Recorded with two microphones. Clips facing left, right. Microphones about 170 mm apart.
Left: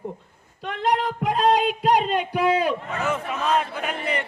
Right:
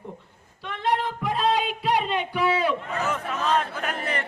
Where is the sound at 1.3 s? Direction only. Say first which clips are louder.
Left 4 dB; 45° left (ahead or behind).